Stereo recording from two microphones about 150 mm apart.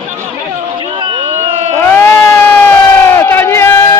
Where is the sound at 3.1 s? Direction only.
15° left (ahead or behind).